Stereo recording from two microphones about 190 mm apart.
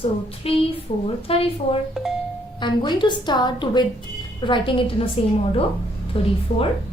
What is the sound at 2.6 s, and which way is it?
A woman's voice, 25° left (ahead or behind).